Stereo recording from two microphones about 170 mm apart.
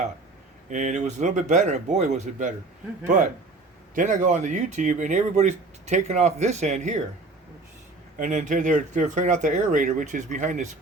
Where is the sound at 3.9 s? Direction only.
50° right (ahead or behind).